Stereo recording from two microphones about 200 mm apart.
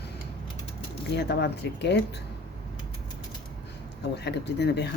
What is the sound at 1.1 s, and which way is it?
Speech, 55° left (ahead or behind).